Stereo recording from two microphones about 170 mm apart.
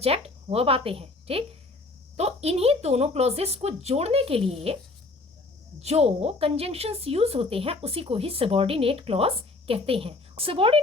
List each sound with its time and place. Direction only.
0.0 s a woman's voice: 35° right (ahead or behind)
5.8 s a woman's voice: 40° right (ahead or behind)